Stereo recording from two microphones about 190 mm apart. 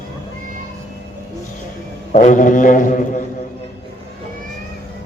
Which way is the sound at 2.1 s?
40° left (ahead or behind).